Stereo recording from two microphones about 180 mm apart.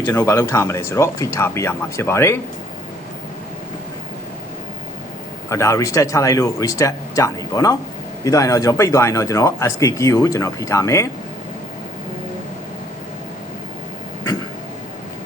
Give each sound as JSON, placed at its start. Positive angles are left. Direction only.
{"t": 0.0, "sound": "speech", "side_deg": 15}
{"t": 5.5, "sound": "speech", "side_deg": 15}